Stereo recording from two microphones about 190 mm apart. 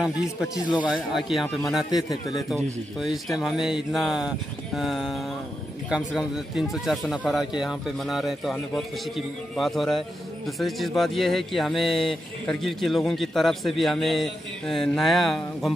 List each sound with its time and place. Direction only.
0.6 s a man's voice: 20° left (ahead or behind)
0.8 s speech: centre (ahead or behind)
2.0 s a man's voice: 20° left (ahead or behind)
2.5 s speech: centre (ahead or behind)